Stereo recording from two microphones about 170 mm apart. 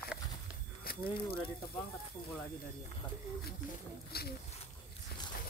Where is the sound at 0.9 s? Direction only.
60° left (ahead or behind).